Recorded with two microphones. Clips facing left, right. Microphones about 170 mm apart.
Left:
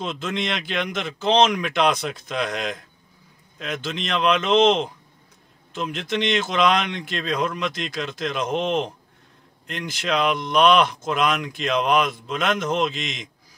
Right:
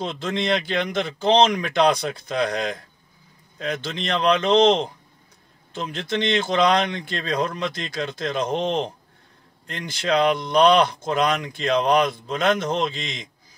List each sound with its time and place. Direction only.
0.0 s speech: 35° right (ahead or behind)